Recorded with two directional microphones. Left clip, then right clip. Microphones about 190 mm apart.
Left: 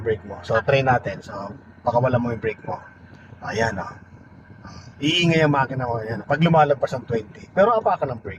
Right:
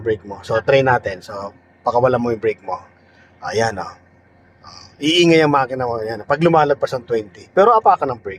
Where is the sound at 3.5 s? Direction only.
30° right (ahead or behind).